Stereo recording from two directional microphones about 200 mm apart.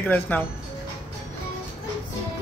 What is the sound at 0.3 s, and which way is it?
Speech, 10° left (ahead or behind).